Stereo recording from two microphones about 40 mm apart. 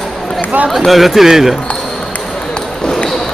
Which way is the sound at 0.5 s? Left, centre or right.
Right.